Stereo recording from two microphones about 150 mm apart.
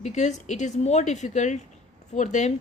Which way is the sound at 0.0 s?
50° left (ahead or behind).